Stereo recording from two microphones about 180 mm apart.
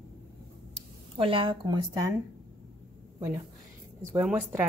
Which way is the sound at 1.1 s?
30° right (ahead or behind).